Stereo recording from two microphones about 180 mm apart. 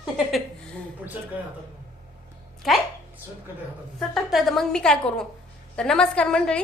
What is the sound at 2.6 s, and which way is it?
Speech, centre (ahead or behind).